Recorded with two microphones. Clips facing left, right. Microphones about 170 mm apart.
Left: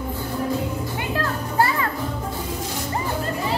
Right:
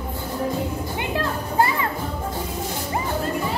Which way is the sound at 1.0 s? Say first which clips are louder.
Right 1 dB; 20° right (ahead or behind).